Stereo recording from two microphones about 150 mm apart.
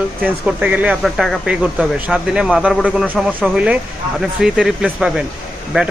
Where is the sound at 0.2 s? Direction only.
10° right (ahead or behind).